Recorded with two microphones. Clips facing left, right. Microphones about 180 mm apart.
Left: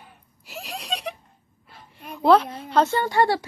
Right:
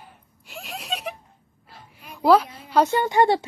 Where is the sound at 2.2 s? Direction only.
5° right (ahead or behind).